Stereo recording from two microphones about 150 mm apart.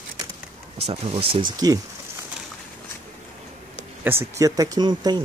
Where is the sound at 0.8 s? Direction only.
35° right (ahead or behind).